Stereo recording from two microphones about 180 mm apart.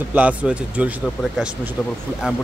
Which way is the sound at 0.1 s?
10° right (ahead or behind).